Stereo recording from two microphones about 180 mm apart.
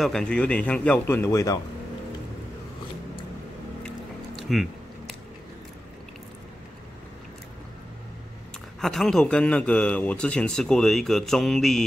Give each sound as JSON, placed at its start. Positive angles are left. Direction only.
{"t": 0.0, "sound": "a man's voice", "side_deg": 5}
{"t": 4.4, "sound": "a sound", "side_deg": 0}
{"t": 8.8, "sound": "a man's voice", "side_deg": 0}